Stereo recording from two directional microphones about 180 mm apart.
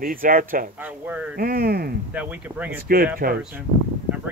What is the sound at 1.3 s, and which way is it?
Speech, 55° right (ahead or behind).